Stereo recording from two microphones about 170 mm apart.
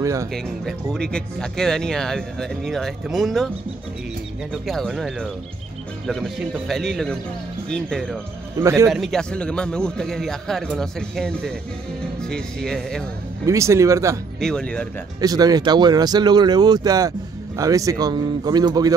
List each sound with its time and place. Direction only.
0.0 s speech: 20° right (ahead or behind)
0.9 s a man's voice: 5° left (ahead or behind)
4.6 s a man's voice: centre (ahead or behind)
8.5 s speech: 15° right (ahead or behind)
8.9 s a man's voice: centre (ahead or behind)
13.5 s speech: 15° right (ahead or behind)
14.4 s a man's voice: 5° left (ahead or behind)
15.1 s speech: 20° right (ahead or behind)